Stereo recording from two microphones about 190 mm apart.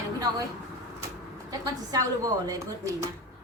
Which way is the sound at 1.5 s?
20° right (ahead or behind).